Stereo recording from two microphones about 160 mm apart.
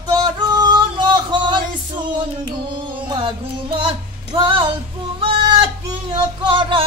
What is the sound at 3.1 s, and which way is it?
Music, 30° right (ahead or behind).